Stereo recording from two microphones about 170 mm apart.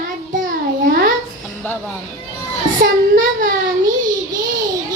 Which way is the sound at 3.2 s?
55° right (ahead or behind).